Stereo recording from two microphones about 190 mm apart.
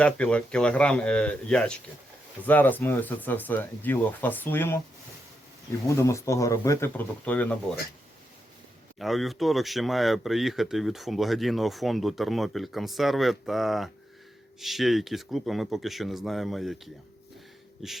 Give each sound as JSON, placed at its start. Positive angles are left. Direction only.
{"t": 0.0, "sound": "speech", "side_deg": 5}
{"t": 6.0, "sound": "speech", "side_deg": 15}
{"t": 9.0, "sound": "speech", "side_deg": 0}